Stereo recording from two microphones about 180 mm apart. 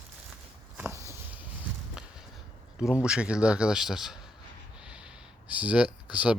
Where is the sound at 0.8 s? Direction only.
15° right (ahead or behind).